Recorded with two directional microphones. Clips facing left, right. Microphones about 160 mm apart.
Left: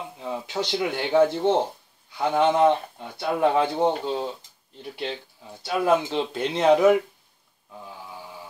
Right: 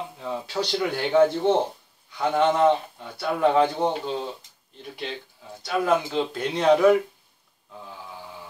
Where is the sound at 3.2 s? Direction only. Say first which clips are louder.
Right 1 dB; 20° left (ahead or behind).